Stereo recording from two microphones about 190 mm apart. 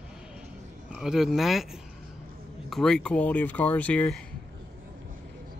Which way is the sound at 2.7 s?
Centre (ahead or behind).